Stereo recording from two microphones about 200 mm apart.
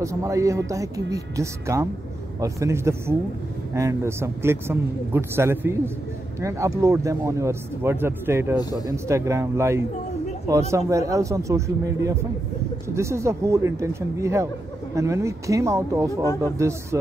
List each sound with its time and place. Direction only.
0.0 s a man's voice: 15° right (ahead or behind)
6.8 s a man's voice: 15° right (ahead or behind)
8.5 s a man's voice: 20° left (ahead or behind)
8.8 s a man's voice: 15° right (ahead or behind)